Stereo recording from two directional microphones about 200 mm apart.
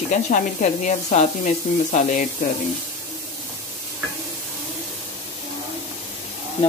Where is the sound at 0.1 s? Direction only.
40° left (ahead or behind).